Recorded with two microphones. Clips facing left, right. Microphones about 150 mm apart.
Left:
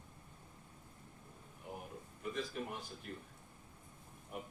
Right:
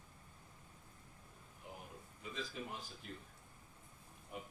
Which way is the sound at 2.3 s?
60° left (ahead or behind).